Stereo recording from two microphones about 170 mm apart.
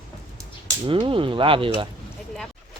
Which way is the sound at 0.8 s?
30° right (ahead or behind).